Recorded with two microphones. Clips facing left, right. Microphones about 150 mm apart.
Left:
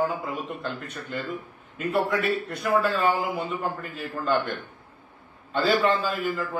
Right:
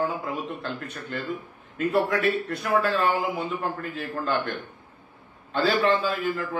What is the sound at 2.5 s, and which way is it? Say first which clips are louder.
A man's voice: even; centre (ahead or behind).